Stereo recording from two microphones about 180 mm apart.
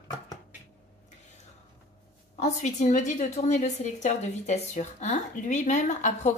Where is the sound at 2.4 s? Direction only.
40° left (ahead or behind).